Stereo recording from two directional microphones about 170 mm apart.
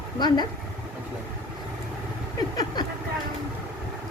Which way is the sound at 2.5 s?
20° left (ahead or behind).